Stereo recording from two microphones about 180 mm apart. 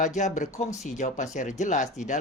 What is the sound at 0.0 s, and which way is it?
Speech, 40° left (ahead or behind).